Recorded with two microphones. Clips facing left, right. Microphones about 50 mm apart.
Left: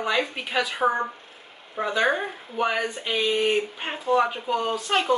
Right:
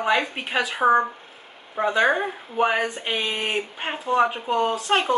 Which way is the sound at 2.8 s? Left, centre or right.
Right.